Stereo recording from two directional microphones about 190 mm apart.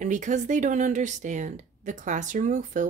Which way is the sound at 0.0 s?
40° right (ahead or behind).